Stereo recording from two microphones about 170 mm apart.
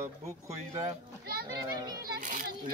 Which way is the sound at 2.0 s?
55° right (ahead or behind).